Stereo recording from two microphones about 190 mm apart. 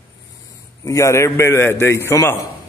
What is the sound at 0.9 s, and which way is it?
A man's voice, 15° left (ahead or behind).